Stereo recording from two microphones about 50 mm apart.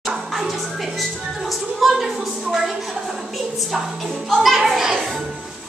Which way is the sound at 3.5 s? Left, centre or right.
Centre.